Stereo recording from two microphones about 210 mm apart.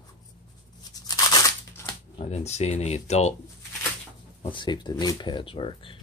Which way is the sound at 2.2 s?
30° left (ahead or behind).